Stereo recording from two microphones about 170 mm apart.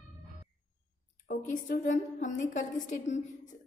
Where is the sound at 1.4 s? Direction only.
50° left (ahead or behind).